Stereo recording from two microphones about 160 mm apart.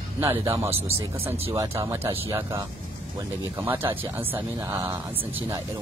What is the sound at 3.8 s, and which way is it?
Speech, 15° right (ahead or behind).